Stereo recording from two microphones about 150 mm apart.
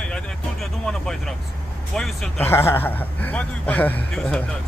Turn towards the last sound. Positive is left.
turn(degrees=5)  # may be behind; listen again after turning